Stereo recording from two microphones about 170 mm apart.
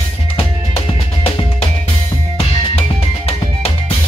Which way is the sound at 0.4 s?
35° left (ahead or behind).